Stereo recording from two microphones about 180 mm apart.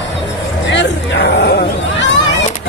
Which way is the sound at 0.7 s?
70° left (ahead or behind).